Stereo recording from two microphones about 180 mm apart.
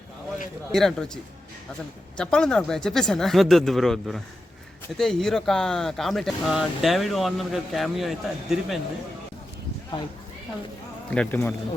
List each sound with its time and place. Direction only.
0.7 s speech: centre (ahead or behind)
11.1 s speech: 10° left (ahead or behind)